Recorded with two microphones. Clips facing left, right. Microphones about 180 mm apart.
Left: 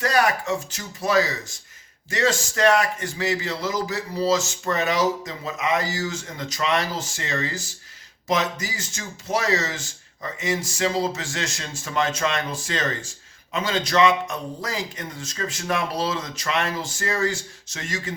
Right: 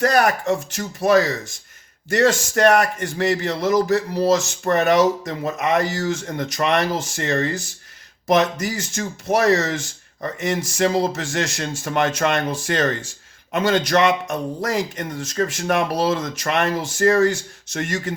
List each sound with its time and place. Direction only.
0.0 s a man's voice: 65° right (ahead or behind)
14.9 s a man's voice: 55° right (ahead or behind)